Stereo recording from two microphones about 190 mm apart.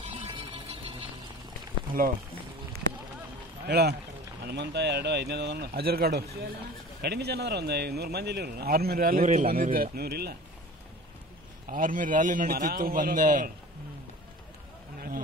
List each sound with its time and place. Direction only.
0.0 s a sound: 30° right (ahead or behind)
3.6 s a man's voice: 60° right (ahead or behind)
11.7 s a man's voice: 45° right (ahead or behind)